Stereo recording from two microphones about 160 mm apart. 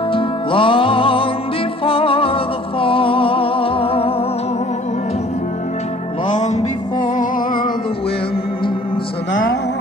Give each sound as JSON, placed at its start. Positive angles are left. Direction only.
{"t": 0.1, "sound": "music", "side_deg": 35}
{"t": 6.2, "sound": "music", "side_deg": 50}